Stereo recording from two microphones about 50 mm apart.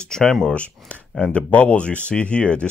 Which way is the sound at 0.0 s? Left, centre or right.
Centre.